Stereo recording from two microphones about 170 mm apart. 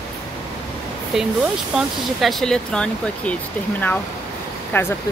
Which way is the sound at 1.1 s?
Centre (ahead or behind).